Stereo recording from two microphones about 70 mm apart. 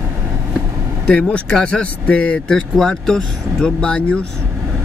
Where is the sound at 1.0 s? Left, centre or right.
Centre.